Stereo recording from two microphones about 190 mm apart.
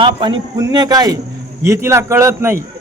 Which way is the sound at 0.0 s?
25° right (ahead or behind).